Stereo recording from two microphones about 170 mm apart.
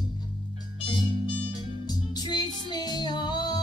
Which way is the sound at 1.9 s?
25° left (ahead or behind).